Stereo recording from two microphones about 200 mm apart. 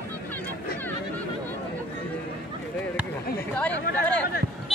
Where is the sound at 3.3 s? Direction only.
5° left (ahead or behind).